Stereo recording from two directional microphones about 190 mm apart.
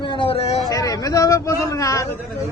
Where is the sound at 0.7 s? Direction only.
20° left (ahead or behind).